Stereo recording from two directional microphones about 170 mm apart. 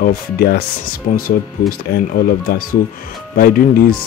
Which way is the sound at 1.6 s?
60° left (ahead or behind).